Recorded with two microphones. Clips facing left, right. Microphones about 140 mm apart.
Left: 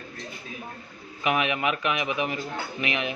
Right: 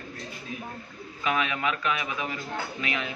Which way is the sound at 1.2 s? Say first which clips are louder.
Left 3 dB; 20° left (ahead or behind).